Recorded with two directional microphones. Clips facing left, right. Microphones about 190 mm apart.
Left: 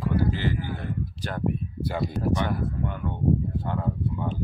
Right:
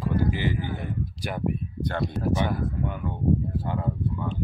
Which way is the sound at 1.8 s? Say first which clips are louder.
Even; 5° left (ahead or behind).